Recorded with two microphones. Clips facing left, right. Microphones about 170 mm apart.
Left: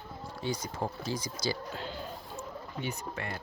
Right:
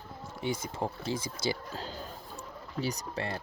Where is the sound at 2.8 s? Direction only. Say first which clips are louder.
Right 4 dB; 35° right (ahead or behind).